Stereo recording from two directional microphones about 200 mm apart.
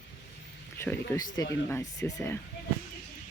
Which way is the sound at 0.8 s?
15° left (ahead or behind).